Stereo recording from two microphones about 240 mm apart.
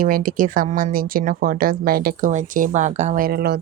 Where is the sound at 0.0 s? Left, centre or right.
Right.